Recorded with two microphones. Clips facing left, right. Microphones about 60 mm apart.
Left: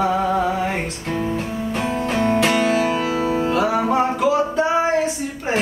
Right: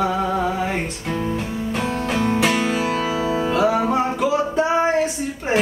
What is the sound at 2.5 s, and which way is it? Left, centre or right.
Music, left.